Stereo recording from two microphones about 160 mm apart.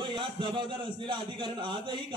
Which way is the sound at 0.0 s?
30° right (ahead or behind).